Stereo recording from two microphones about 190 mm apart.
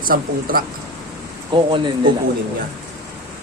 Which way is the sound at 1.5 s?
25° right (ahead or behind).